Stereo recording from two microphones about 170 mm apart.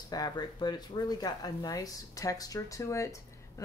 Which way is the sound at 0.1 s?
25° left (ahead or behind).